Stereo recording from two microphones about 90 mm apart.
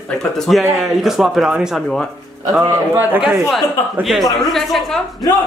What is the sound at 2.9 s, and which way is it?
Speech, 20° right (ahead or behind).